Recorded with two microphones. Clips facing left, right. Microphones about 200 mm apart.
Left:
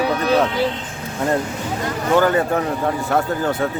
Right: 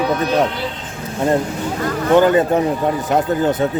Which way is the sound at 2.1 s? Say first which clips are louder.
Right 4 dB; 20° right (ahead or behind).